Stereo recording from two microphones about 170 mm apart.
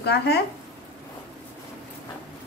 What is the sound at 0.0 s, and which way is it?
Speech, 75° left (ahead or behind).